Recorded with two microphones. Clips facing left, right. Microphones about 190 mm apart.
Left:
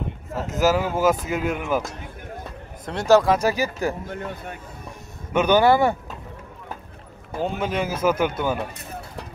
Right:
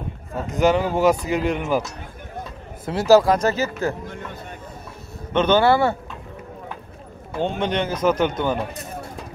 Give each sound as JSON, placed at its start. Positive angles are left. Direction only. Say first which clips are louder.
{"t": 0.5, "sound": "speech", "louder": "right 2 dB", "side_deg": 5}
{"t": 2.8, "sound": "speech", "louder": "right 2 dB", "side_deg": -5}
{"t": 3.3, "sound": "speech", "louder": "right 1 dB", "side_deg": 10}
{"t": 5.3, "sound": "speech", "louder": "even", "side_deg": 10}
{"t": 7.4, "sound": "speech", "louder": "right 2 dB", "side_deg": 5}